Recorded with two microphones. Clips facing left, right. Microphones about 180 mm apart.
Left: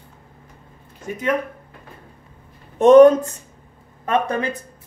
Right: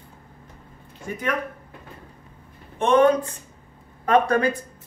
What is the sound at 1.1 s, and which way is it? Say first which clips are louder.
Speech: left 2 dB; 20° left (ahead or behind).